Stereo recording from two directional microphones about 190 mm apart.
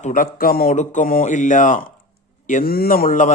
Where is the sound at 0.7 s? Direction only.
40° left (ahead or behind).